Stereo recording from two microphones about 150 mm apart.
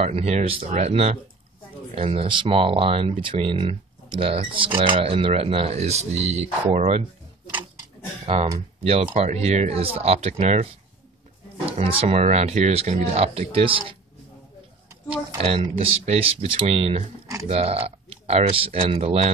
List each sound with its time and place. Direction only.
0.0 s speech: 45° right (ahead or behind)
8.8 s speech: 40° right (ahead or behind)
11.7 s speech: 40° right (ahead or behind)
15.3 s speech: 40° right (ahead or behind)